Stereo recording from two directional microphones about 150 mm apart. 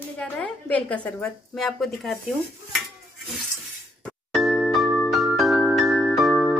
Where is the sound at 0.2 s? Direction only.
10° left (ahead or behind).